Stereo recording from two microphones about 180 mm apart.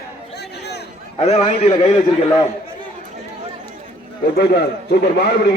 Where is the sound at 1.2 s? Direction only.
35° left (ahead or behind).